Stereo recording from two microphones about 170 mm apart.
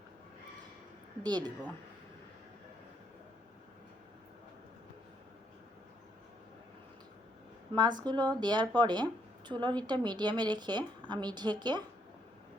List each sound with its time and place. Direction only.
1.2 s a woman's voice: 25° right (ahead or behind)
7.7 s a woman's voice: 25° right (ahead or behind)